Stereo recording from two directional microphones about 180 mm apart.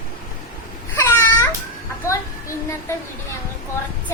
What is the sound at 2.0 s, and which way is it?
Child singing, 15° left (ahead or behind).